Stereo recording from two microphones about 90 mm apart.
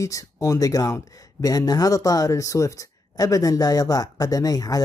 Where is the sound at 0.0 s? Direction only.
40° left (ahead or behind).